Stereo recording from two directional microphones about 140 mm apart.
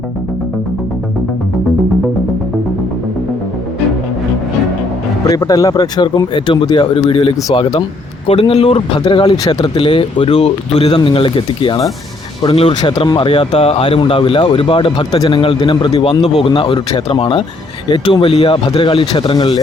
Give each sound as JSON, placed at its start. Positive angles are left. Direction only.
{"t": 5.2, "sound": "speech", "side_deg": 25}
{"t": 8.3, "sound": "speech", "side_deg": 45}
{"t": 16.2, "sound": "speech", "side_deg": 45}